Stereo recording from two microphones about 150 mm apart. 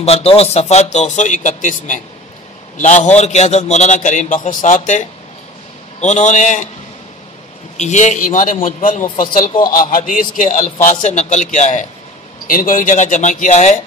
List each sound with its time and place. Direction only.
0.0 s a man's voice: 40° left (ahead or behind)
7.7 s a man's voice: 50° left (ahead or behind)
12.4 s a man's voice: 65° left (ahead or behind)